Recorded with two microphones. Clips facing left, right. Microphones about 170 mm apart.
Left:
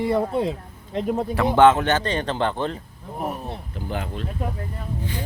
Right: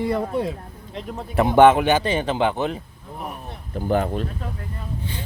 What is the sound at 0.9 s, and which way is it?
Speech, 40° left (ahead or behind).